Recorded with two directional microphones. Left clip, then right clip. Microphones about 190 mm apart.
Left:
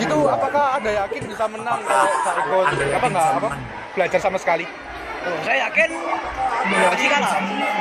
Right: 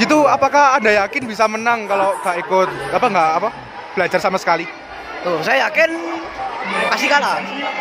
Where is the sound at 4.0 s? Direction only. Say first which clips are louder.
Right 3 dB; 20° right (ahead or behind).